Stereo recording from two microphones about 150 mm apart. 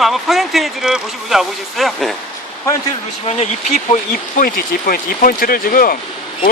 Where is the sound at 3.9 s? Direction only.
65° left (ahead or behind).